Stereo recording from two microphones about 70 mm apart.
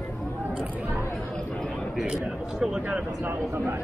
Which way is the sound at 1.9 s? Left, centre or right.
Centre.